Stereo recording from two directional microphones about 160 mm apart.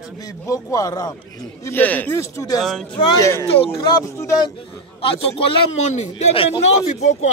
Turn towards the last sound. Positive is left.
turn(degrees=45)  # may be behind; listen again after turning